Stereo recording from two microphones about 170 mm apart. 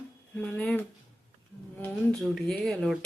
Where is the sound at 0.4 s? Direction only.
5° left (ahead or behind).